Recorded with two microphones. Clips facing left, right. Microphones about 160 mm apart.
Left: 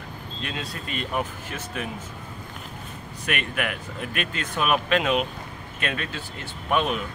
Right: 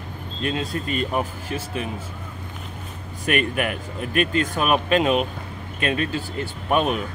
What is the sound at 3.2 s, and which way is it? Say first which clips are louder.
Speech: right 6 dB; 40° right (ahead or behind).